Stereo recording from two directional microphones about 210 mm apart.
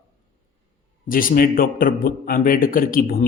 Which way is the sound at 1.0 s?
40° left (ahead or behind).